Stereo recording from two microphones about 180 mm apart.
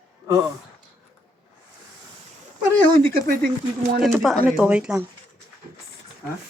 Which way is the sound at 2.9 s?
55° right (ahead or behind).